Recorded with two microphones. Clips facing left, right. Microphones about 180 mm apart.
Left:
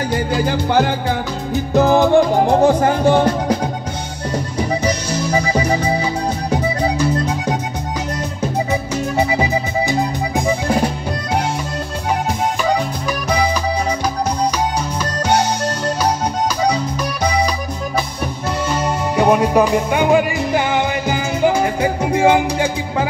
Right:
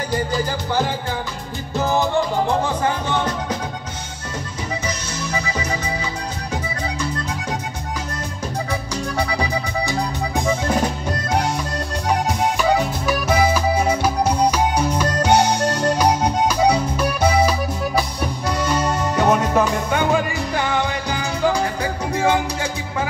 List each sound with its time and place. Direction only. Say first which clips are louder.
0.3 s music: left 6 dB; 65° left (ahead or behind)
1.8 s music: left 7 dB; 55° left (ahead or behind); by 3.3 s 40° left (ahead or behind)
4.8 s music: left 8 dB; 30° left (ahead or behind)
9.1 s accordion: left 5 dB; 20° left (ahead or behind)
14.4 s music: right 1 dB; 10° right (ahead or behind)
18.8 s music: left 2 dB; 10° left (ahead or behind)